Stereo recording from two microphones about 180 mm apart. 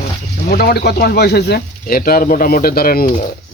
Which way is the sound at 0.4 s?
55° left (ahead or behind).